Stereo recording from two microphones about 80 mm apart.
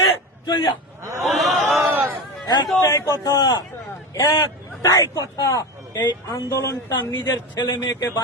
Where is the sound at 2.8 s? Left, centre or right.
Left.